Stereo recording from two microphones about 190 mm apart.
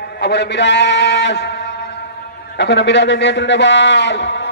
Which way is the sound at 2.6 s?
65° left (ahead or behind).